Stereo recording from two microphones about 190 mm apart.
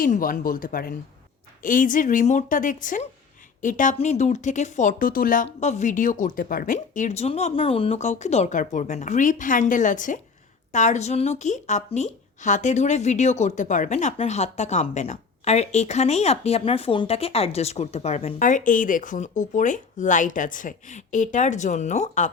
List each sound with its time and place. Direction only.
0.0 s a woman's voice: 50° left (ahead or behind)